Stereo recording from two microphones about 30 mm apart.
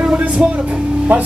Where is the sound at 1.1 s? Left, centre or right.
Right.